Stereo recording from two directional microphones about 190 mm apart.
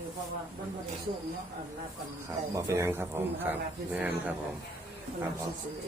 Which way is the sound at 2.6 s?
15° right (ahead or behind).